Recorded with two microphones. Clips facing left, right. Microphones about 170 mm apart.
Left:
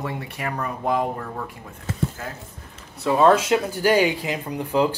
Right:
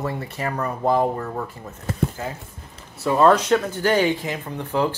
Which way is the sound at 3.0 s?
Centre (ahead or behind).